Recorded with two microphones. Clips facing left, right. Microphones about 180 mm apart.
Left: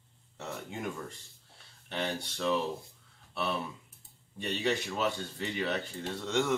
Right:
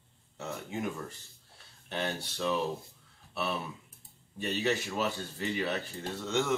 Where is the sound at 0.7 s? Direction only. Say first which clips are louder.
Right 4 dB; 5° right (ahead or behind).